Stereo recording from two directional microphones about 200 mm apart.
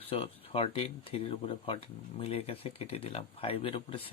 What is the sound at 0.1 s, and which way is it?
Speech, 30° left (ahead or behind).